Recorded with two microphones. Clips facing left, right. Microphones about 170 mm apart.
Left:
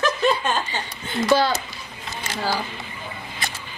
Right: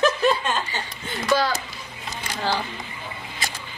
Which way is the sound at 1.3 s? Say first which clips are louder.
Left 3 dB; 30° left (ahead or behind).